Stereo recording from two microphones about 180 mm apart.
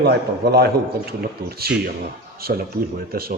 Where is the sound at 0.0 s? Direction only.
65° right (ahead or behind).